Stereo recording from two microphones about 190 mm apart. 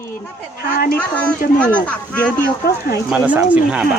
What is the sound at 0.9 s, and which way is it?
Speech, 10° left (ahead or behind).